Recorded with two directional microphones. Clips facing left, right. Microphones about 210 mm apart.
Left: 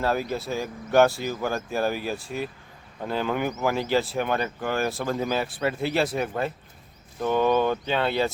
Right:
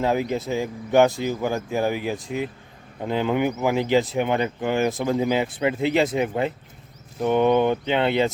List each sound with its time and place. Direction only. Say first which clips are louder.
0.0 s speech: right 3 dB; 15° right (ahead or behind)